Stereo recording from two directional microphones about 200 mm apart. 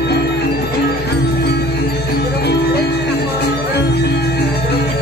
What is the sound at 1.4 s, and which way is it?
Music, 55° left (ahead or behind).